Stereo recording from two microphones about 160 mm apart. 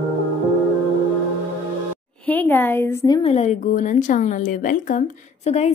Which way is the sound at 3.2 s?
40° left (ahead or behind).